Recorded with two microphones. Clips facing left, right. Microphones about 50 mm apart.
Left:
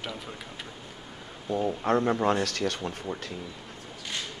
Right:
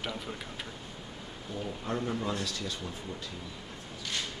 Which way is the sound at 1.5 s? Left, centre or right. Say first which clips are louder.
Left 10 dB; left.